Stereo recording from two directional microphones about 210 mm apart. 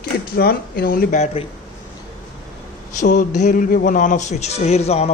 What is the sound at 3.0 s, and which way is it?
Speech, 35° left (ahead or behind).